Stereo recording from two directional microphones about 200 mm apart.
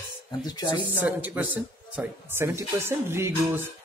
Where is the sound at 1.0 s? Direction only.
10° right (ahead or behind).